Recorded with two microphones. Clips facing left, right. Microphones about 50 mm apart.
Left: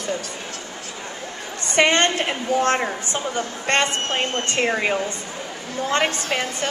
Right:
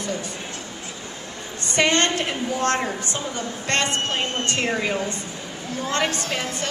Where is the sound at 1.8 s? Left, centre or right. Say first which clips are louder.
Left 2 dB; left.